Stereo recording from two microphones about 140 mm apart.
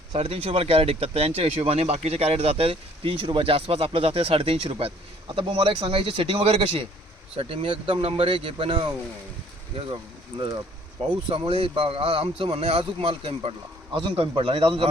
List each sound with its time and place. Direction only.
0.1 s speech: 45° right (ahead or behind)